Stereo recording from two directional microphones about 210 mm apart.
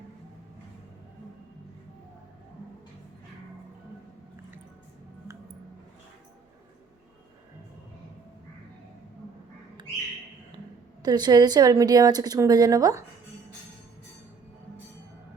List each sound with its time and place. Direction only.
11.0 s a woman's voice: 20° right (ahead or behind)